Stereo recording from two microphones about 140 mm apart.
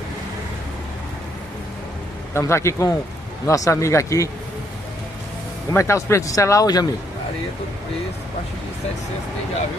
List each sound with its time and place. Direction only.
2.3 s speech: 20° left (ahead or behind)
5.7 s speech: 20° left (ahead or behind)